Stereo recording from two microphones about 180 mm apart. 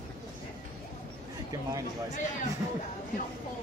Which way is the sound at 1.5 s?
20° right (ahead or behind).